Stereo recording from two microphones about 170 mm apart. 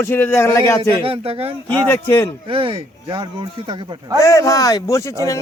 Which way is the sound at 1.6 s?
15° left (ahead or behind).